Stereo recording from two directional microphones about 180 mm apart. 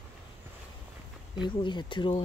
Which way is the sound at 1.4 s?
25° left (ahead or behind).